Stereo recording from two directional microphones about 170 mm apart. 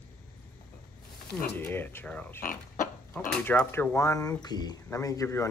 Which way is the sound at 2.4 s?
55° left (ahead or behind).